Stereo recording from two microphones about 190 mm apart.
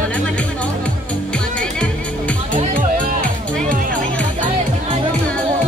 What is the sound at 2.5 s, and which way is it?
Music, 45° right (ahead or behind).